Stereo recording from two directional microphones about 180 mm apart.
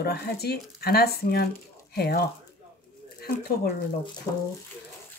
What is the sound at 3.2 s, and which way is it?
Speech, 60° left (ahead or behind).